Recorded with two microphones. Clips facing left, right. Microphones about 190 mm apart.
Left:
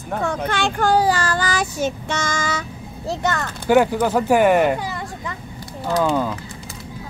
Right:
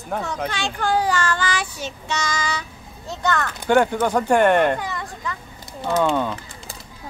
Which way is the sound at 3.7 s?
5° left (ahead or behind).